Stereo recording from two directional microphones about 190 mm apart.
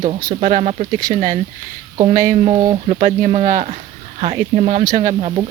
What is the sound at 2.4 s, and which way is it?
Speech, 25° right (ahead or behind).